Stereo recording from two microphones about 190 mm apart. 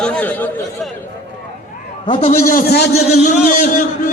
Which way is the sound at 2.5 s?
50° left (ahead or behind).